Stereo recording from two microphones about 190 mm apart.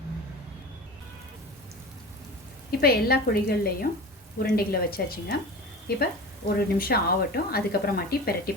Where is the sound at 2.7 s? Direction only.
55° left (ahead or behind).